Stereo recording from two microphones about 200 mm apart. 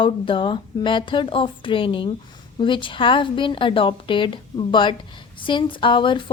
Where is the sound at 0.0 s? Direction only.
25° left (ahead or behind).